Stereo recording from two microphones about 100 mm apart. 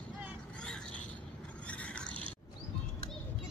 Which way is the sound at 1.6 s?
10° left (ahead or behind).